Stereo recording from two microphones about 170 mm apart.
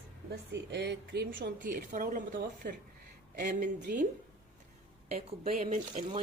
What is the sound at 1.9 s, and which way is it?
Speech, 50° right (ahead or behind).